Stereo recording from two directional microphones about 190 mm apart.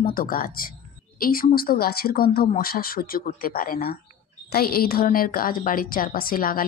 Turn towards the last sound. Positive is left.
turn(degrees=50)  # may be behind; listen again after turning